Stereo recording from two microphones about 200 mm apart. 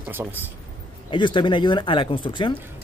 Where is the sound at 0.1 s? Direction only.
10° right (ahead or behind).